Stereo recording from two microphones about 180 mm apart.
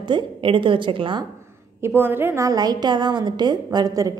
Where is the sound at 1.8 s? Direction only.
10° right (ahead or behind).